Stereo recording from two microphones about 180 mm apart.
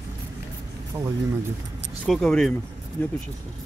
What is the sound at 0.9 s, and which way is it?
Speech, 15° right (ahead or behind).